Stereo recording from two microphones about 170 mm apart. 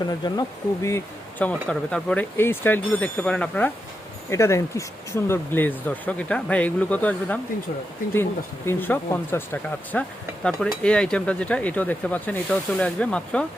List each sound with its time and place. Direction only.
0.0 s speech: 20° left (ahead or behind); by 13.4 s 5° left (ahead or behind)